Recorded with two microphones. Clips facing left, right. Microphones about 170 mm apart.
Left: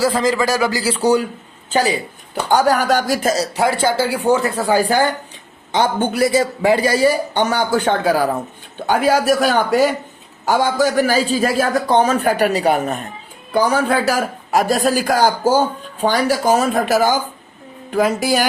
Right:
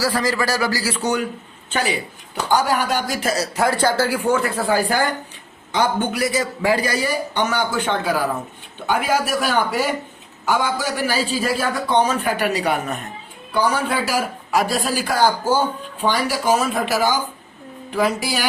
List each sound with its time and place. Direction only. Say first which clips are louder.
0.0 s a man's voice: left 4 dB; 20° left (ahead or behind); by 3.3 s 40° left (ahead or behind)
3.4 s a man's voice: left 2 dB; 25° left (ahead or behind)
8.9 s speech: left 5 dB; 40° left (ahead or behind)